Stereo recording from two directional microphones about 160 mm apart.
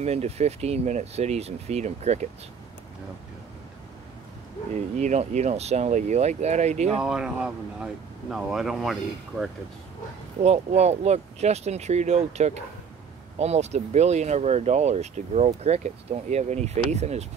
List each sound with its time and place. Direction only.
0.0 s speech: 45° right (ahead or behind)
4.9 s speech: 45° right (ahead or behind)
7.0 s speech: 5° right (ahead or behind)
10.4 s speech: 40° right (ahead or behind)